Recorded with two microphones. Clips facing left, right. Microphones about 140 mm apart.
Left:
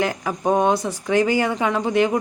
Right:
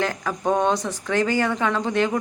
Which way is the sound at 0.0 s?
15° left (ahead or behind).